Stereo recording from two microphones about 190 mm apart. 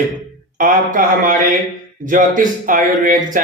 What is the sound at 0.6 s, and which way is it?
Speech, 45° right (ahead or behind).